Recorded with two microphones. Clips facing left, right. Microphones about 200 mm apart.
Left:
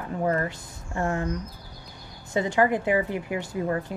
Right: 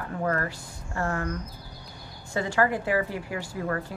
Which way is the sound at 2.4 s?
20° left (ahead or behind).